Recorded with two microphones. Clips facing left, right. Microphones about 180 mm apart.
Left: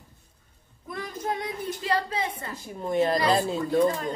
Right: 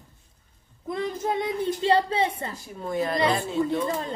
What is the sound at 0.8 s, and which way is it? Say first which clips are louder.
Child singing: right 4 dB; 25° right (ahead or behind).